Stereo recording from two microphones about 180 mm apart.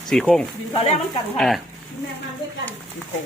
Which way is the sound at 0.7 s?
35° left (ahead or behind).